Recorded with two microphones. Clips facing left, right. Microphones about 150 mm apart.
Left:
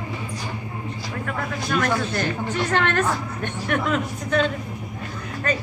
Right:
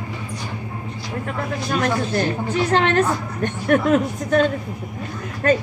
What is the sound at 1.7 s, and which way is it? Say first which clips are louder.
Speech: right 2 dB; 35° right (ahead or behind).